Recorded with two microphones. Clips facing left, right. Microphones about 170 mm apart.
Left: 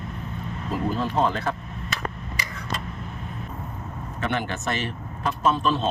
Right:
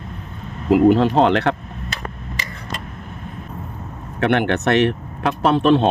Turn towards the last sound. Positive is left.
turn(degrees=-65)  # may be behind; listen again after turning